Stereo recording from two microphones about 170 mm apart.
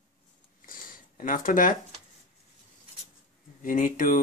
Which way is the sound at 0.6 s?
55° left (ahead or behind).